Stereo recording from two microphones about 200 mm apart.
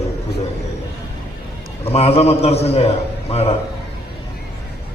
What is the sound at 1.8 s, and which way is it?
A man's voice, 30° left (ahead or behind).